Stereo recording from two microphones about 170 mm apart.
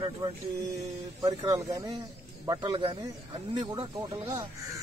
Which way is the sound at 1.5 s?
20° right (ahead or behind).